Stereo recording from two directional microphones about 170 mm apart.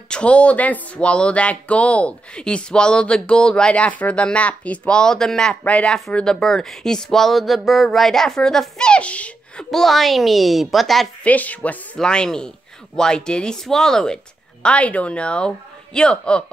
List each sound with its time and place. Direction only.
0.1 s speech: 5° left (ahead or behind)